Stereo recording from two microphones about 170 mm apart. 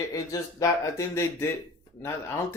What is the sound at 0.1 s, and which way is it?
Speech, 20° left (ahead or behind).